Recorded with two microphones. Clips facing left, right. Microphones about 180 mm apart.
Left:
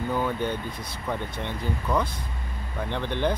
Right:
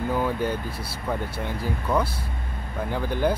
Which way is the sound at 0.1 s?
5° right (ahead or behind).